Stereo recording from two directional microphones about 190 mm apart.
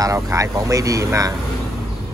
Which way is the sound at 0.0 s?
15° right (ahead or behind).